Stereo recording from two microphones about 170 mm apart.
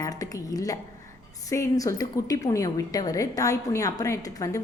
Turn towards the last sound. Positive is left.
turn(degrees=20)  # may be behind; listen again after turning